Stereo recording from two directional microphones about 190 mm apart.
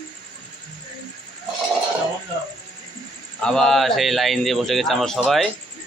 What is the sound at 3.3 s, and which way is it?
A man's voice, 5° left (ahead or behind).